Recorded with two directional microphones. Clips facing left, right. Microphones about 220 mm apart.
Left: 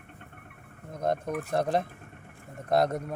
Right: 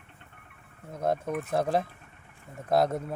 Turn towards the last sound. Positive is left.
turn(degrees=0)  # may be behind; listen again after turning